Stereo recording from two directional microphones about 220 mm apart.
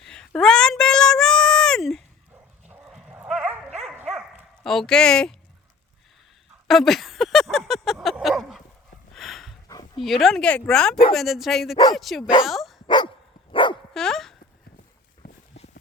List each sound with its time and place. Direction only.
0.0 s a sound: centre (ahead or behind)
2.6 s dog: 5° right (ahead or behind)
4.6 s speech: centre (ahead or behind)
6.7 s a sound: centre (ahead or behind)
9.6 s dog: 15° left (ahead or behind)
10.0 s speech: centre (ahead or behind)
12.5 s dog: centre (ahead or behind)
13.5 s dog: 20° left (ahead or behind)
13.9 s dog: centre (ahead or behind)